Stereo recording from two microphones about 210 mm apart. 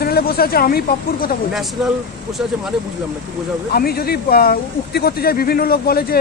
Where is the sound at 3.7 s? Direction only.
45° left (ahead or behind).